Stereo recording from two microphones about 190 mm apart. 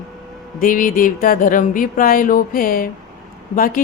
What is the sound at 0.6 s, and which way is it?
A woman's voice, 45° left (ahead or behind).